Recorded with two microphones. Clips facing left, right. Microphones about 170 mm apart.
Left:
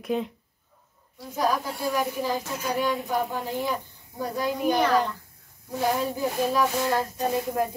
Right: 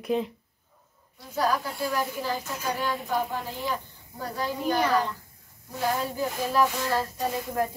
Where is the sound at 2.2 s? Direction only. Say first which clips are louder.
Left 3 dB; 15° left (ahead or behind).